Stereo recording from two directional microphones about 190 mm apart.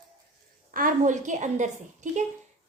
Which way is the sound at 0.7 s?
45° right (ahead or behind).